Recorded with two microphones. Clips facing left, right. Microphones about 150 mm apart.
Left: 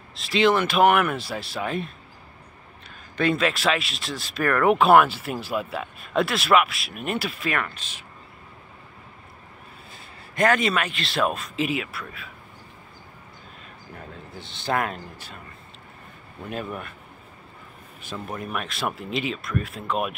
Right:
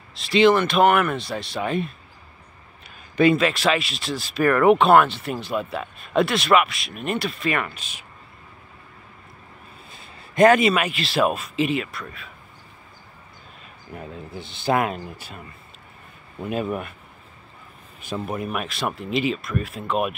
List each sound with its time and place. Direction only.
0.1 s speech: centre (ahead or behind)
3.2 s speech: 5° right (ahead or behind)
9.9 s a sound: 20° right (ahead or behind)
10.6 s speech: 5° right (ahead or behind)
13.9 s speech: 10° right (ahead or behind)
16.4 s speech: 15° right (ahead or behind)
18.0 s speech: 15° right (ahead or behind)